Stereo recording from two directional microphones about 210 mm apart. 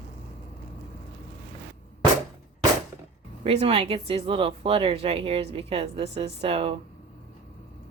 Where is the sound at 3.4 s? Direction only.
30° right (ahead or behind).